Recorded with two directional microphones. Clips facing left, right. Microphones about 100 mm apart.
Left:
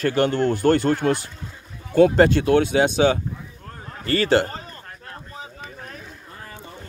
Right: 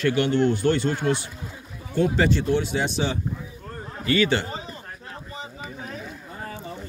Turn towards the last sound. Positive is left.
turn(degrees=0)  # may be behind; listen again after turning